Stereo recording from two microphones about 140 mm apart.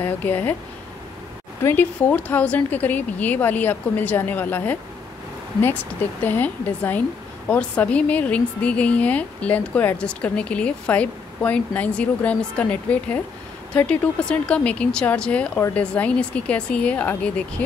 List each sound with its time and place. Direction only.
0.0 s a woman's voice: 15° left (ahead or behind)
1.6 s a woman's voice: 15° left (ahead or behind)
6.2 s a woman's voice: 15° left (ahead or behind)